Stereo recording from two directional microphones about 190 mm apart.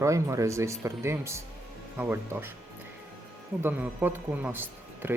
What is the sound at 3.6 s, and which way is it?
Speech, 10° right (ahead or behind).